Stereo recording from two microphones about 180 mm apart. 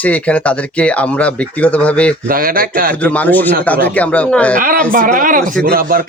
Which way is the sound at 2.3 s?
55° right (ahead or behind).